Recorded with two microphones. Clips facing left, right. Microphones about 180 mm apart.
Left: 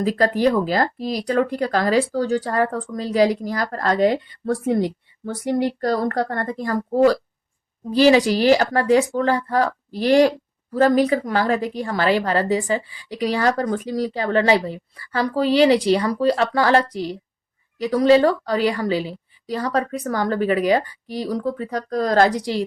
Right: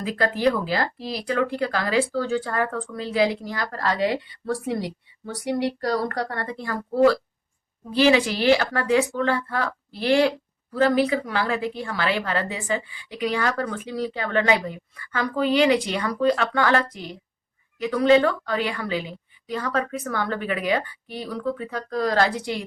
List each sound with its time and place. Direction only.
0.0 s a woman's voice: 40° left (ahead or behind)